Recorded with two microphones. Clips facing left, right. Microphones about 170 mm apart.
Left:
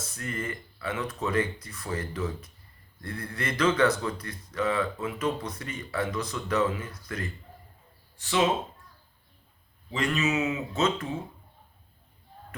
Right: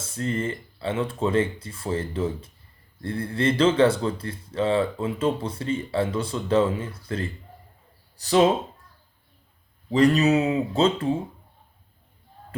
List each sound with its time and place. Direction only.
0.0 s speech: 25° right (ahead or behind)
9.9 s speech: 35° right (ahead or behind)